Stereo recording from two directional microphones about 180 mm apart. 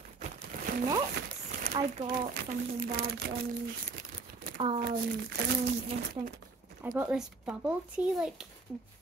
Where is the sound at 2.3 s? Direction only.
60° right (ahead or behind).